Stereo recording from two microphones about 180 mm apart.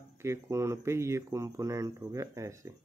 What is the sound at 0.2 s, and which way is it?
Speech, 15° right (ahead or behind).